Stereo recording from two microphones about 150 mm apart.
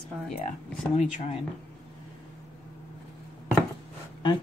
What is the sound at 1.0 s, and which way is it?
Speech, 50° left (ahead or behind).